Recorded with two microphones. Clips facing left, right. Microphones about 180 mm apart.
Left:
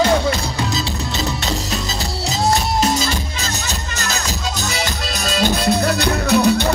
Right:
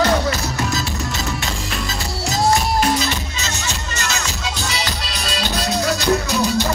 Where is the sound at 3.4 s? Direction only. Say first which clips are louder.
Left 1 dB; 35° left (ahead or behind).